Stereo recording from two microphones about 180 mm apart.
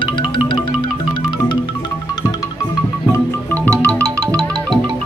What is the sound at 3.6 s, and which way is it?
Music, 5° left (ahead or behind).